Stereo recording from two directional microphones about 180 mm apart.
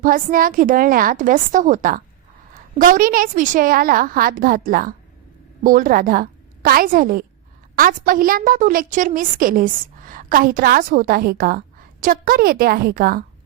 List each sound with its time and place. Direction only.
0.0 s a woman's voice: 50° right (ahead or behind)